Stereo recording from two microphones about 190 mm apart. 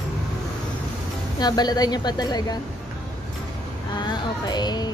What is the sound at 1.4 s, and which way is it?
A woman's voice, 20° left (ahead or behind).